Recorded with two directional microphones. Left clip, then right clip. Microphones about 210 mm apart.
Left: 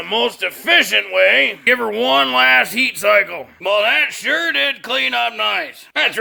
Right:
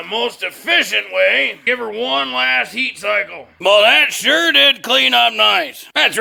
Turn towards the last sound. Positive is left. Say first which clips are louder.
# right 3 dB
turn(degrees=-55)  # may be behind; listen again after turning